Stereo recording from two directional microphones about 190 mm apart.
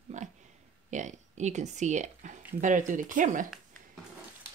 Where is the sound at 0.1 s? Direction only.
40° right (ahead or behind).